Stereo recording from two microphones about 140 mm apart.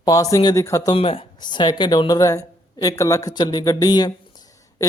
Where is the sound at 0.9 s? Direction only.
40° left (ahead or behind).